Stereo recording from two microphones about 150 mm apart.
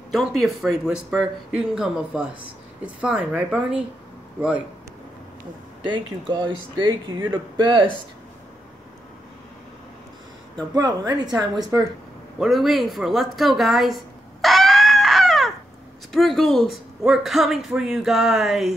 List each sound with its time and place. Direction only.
0.1 s a woman's voice: centre (ahead or behind)
5.9 s speech: 30° right (ahead or behind)
10.7 s speech: 25° right (ahead or behind)
12.4 s a sound: centre (ahead or behind)
16.1 s speech: centre (ahead or behind)